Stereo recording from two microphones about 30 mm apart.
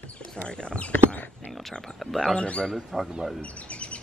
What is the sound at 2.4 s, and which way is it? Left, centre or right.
Speech, left.